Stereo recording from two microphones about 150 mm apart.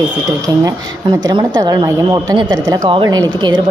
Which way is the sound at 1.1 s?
25° right (ahead or behind).